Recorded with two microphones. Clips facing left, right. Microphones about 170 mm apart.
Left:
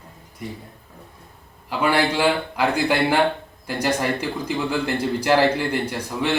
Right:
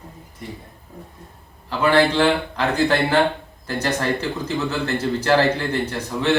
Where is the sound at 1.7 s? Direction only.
10° left (ahead or behind).